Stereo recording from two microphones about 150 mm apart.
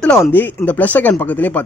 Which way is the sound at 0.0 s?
10° left (ahead or behind).